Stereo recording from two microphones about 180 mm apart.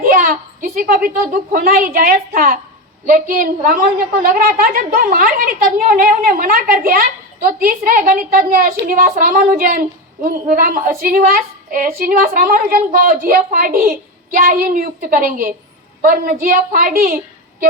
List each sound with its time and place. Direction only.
0.0 s a child's voice: 50° right (ahead or behind)